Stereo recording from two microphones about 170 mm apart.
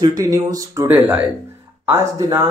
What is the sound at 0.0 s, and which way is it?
Speech, 20° right (ahead or behind).